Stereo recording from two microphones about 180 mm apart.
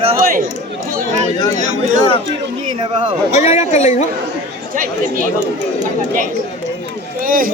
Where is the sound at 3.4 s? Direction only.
40° left (ahead or behind).